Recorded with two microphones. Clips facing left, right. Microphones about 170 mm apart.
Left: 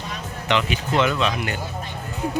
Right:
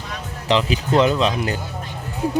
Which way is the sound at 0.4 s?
35° right (ahead or behind).